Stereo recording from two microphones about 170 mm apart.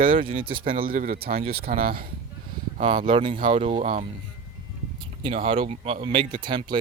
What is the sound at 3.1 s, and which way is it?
Speech, 30° right (ahead or behind).